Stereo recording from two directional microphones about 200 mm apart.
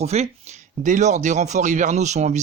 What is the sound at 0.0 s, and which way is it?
Speech, 35° right (ahead or behind).